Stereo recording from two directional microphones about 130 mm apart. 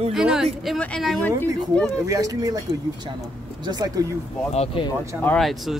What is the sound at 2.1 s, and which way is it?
Speech, 25° right (ahead or behind).